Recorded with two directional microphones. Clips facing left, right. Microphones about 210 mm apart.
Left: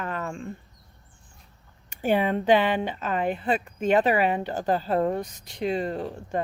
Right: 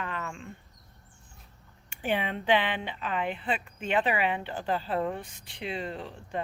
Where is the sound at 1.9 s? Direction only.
40° left (ahead or behind).